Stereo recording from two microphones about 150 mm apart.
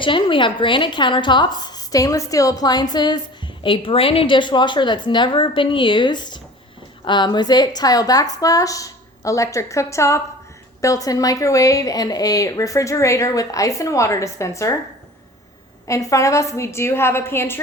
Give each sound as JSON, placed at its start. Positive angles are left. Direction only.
{"t": 0.0, "sound": "a woman's voice", "side_deg": 35}
{"t": 15.9, "sound": "a woman's voice", "side_deg": 20}